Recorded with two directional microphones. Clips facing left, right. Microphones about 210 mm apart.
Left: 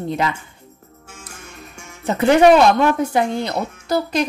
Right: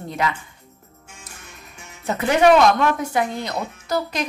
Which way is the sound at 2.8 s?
30° left (ahead or behind).